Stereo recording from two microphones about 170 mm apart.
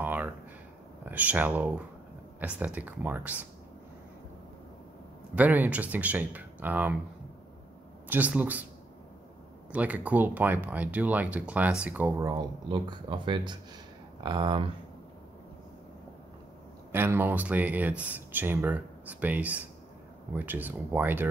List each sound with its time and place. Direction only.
0.0 s a sound: 10° right (ahead or behind)
1.0 s speech: 10° right (ahead or behind)
5.3 s speech: 10° right (ahead or behind)
8.1 s speech: 10° right (ahead or behind)
9.7 s speech: 10° right (ahead or behind); by 14.7 s 30° right (ahead or behind)
16.9 s speech: 10° right (ahead or behind)